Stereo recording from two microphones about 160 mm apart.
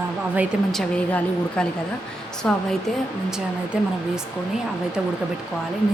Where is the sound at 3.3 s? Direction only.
5° right (ahead or behind).